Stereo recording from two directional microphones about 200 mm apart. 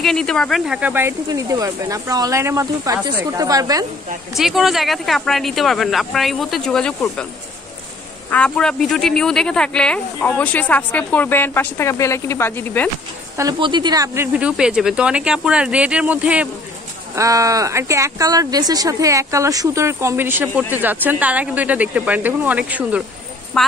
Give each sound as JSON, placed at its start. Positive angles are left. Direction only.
{"t": 0.0, "sound": "speech", "side_deg": 0}
{"t": 4.3, "sound": "speech", "side_deg": 0}
{"t": 8.3, "sound": "speech", "side_deg": 5}
{"t": 13.4, "sound": "speech", "side_deg": -20}